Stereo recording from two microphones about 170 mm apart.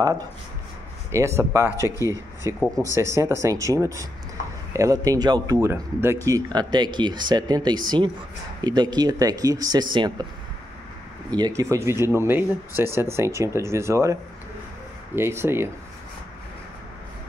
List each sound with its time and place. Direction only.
0.0 s speech: 20° right (ahead or behind)
11.3 s speech: 20° right (ahead or behind)
15.1 s speech: 15° right (ahead or behind)